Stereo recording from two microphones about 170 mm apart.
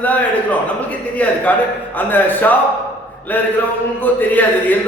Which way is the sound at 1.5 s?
10° left (ahead or behind).